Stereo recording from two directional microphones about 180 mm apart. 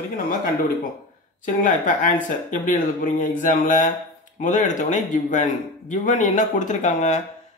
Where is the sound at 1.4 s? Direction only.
45° left (ahead or behind).